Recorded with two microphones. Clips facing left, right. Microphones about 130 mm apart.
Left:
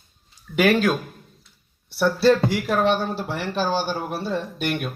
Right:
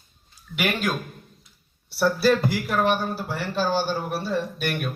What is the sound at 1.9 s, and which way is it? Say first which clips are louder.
A man's voice: left 2 dB; 25° left (ahead or behind).